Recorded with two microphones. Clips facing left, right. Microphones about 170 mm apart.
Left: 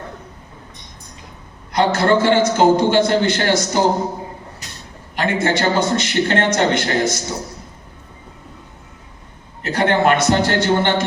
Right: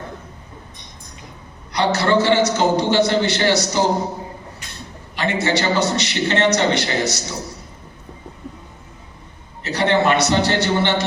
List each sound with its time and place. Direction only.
1.7 s a man's voice: 50° left (ahead or behind)
5.1 s a man's voice: 50° left (ahead or behind)
9.6 s a man's voice: 50° left (ahead or behind)